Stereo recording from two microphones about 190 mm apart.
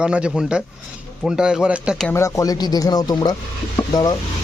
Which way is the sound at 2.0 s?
15° left (ahead or behind).